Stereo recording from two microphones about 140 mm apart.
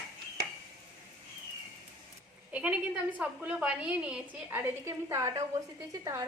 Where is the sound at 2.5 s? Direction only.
10° right (ahead or behind).